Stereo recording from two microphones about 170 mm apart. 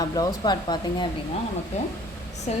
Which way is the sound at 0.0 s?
20° left (ahead or behind).